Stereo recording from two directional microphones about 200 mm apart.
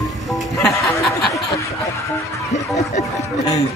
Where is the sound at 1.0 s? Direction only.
Centre (ahead or behind).